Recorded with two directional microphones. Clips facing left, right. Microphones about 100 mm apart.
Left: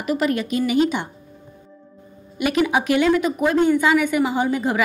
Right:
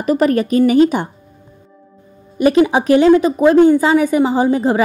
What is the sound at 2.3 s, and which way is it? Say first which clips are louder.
A woman's voice: right 7 dB; 35° right (ahead or behind).